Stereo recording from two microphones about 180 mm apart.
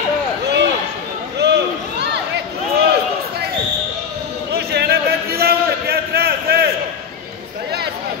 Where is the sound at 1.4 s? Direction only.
70° right (ahead or behind).